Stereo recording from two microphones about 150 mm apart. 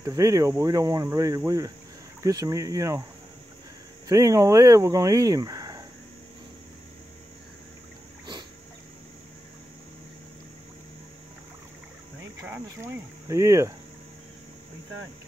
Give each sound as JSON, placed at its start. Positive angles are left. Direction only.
{"t": 0.0, "sound": "speech", "side_deg": -20}
{"t": 4.1, "sound": "speech", "side_deg": -20}
{"t": 12.4, "sound": "speech", "side_deg": -20}